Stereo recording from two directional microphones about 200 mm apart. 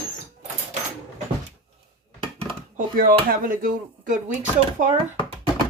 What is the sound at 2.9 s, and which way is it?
Speech, 45° right (ahead or behind).